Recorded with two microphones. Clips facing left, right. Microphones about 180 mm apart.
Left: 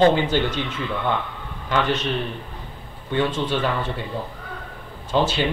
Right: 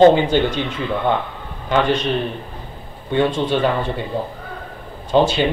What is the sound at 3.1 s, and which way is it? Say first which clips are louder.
Speech: right 5 dB; 20° right (ahead or behind).